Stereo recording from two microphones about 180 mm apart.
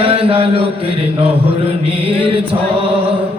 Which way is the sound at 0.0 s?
30° right (ahead or behind).